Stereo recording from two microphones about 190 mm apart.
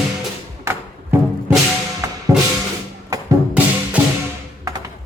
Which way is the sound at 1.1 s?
10° right (ahead or behind).